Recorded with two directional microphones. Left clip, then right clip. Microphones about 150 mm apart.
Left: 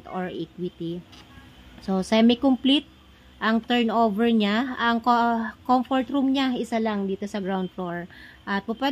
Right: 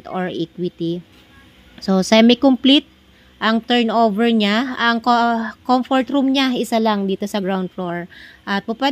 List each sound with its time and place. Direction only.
0.0 s a woman's voice: 10° right (ahead or behind)